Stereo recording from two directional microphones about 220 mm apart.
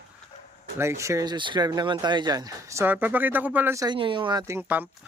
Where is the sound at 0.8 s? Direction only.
15° right (ahead or behind).